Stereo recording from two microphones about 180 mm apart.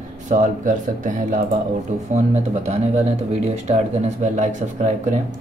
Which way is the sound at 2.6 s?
35° right (ahead or behind).